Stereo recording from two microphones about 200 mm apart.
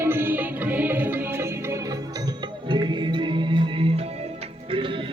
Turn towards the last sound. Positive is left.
turn(degrees=-25)  # may be behind; listen again after turning